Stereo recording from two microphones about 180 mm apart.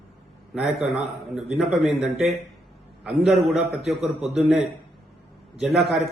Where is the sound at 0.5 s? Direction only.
Centre (ahead or behind).